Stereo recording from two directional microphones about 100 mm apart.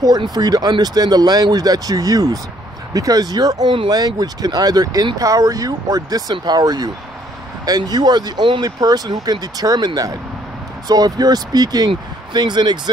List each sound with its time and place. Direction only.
0.2 s speech: 45° right (ahead or behind)